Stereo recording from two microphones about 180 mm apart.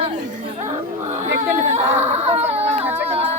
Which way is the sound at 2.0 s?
40° right (ahead or behind).